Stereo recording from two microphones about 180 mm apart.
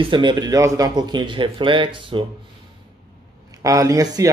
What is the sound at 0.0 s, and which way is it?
Speech, 25° right (ahead or behind).